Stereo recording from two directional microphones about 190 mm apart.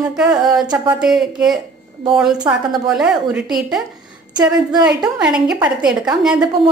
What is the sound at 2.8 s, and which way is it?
A woman's voice, 5° right (ahead or behind).